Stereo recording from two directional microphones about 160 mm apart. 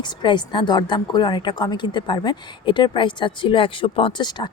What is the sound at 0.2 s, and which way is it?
A woman's voice, 30° left (ahead or behind).